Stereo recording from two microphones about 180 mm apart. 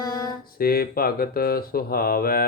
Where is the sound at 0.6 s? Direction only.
55° left (ahead or behind).